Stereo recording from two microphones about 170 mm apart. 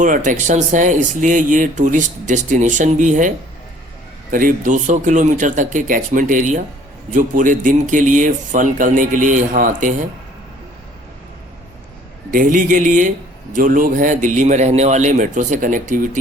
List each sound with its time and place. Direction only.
0.0 s speech: 50° right (ahead or behind)
12.3 s speech: 50° right (ahead or behind)